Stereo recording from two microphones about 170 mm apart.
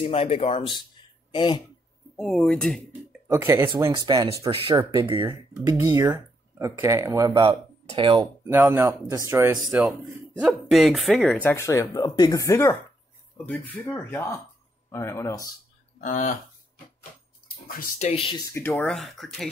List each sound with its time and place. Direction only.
0.0 s speech: 30° left (ahead or behind)
2.1 s speech: centre (ahead or behind)
3.3 s speech: 15° right (ahead or behind)
6.6 s speech: 15° right (ahead or behind)
7.4 s speech: 30° right (ahead or behind)
8.5 s speech: 15° right (ahead or behind)
11.4 s speech: 15° left (ahead or behind)
16.0 s speech: 45° left (ahead or behind)
17.6 s speech: 50° left (ahead or behind)
18.4 s speech: 15° left (ahead or behind)
18.9 s speech: centre (ahead or behind)